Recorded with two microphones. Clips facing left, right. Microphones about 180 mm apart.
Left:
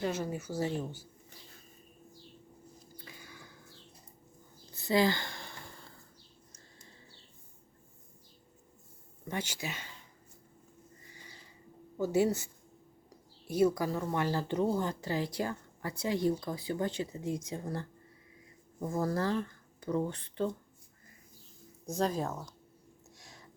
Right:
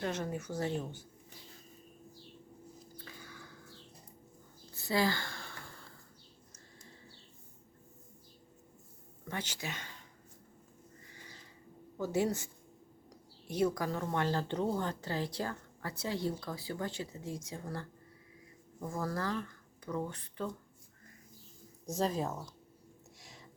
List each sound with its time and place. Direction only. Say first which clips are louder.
0.0 s speech: left 2 dB; 5° left (ahead or behind)
3.0 s a sound: even; 15° left (ahead or behind)
4.7 s a sound: left 4 dB; 20° left (ahead or behind)
9.3 s a woman's voice: left 3 dB; 10° left (ahead or behind)
11.9 s a woman's voice: left 4 dB; 10° left (ahead or behind); by 20.5 s 30° left (ahead or behind)
21.8 s speech: left 1 dB; centre (ahead or behind)